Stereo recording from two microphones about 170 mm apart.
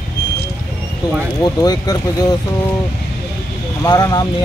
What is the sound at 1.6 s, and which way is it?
Speech, 20° left (ahead or behind).